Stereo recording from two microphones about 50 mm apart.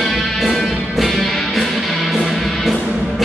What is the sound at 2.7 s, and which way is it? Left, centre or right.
Music, centre.